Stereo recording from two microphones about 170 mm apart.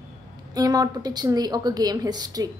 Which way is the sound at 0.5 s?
20° right (ahead or behind).